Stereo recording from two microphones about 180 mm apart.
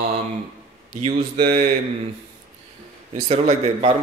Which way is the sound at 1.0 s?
30° right (ahead or behind).